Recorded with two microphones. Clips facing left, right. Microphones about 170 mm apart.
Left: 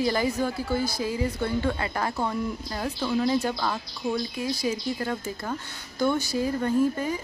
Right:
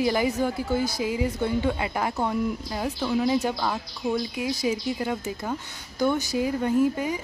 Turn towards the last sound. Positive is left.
turn(degrees=-10)  # may be behind; listen again after turning